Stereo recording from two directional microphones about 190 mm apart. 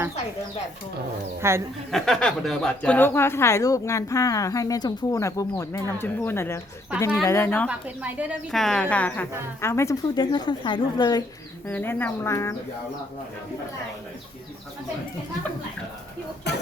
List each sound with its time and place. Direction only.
1.4 s speech: 15° right (ahead or behind)
1.9 s a woman's voice: centre (ahead or behind)
7.7 s a woman's voice: 5° right (ahead or behind); by 11.2 s 20° left (ahead or behind)
11.7 s a woman's voice: 10° left (ahead or behind)
16.5 s speech: 65° left (ahead or behind)